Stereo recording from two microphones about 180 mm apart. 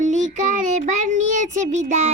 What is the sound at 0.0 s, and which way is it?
Child singing, 45° right (ahead or behind).